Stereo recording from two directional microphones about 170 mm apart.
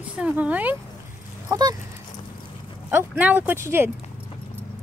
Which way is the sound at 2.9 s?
10° right (ahead or behind).